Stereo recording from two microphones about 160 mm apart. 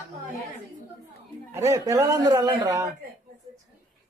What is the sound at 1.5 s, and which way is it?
A man's voice, 20° right (ahead or behind).